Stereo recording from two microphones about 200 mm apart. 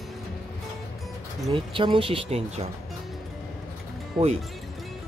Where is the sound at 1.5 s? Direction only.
25° right (ahead or behind).